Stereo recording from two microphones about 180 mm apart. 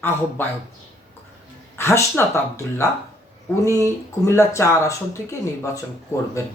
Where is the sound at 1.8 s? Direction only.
15° left (ahead or behind).